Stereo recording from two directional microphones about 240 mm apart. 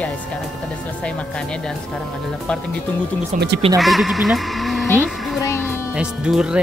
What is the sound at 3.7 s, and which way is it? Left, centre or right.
Speech, centre.